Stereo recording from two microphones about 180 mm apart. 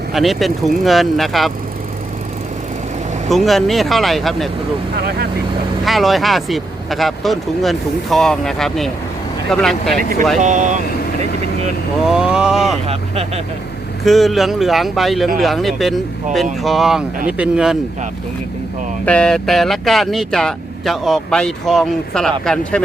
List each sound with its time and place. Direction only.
0.1 s speech: centre (ahead or behind)
3.2 s speech: centre (ahead or behind)
4.9 s speech: 60° right (ahead or behind)
5.8 s speech: centre (ahead or behind)
10.4 s speech: 45° right (ahead or behind)
12.0 s speech: 5° right (ahead or behind)
12.9 s speech: 35° right (ahead or behind)
14.0 s speech: centre (ahead or behind)
19.0 s speech: 5° left (ahead or behind)